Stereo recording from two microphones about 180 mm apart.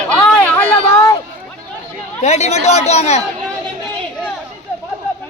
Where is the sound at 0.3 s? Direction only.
10° left (ahead or behind).